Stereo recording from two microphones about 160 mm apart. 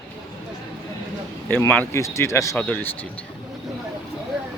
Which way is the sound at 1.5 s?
10° left (ahead or behind).